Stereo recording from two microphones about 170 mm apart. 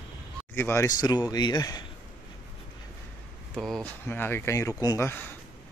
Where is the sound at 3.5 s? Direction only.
Centre (ahead or behind).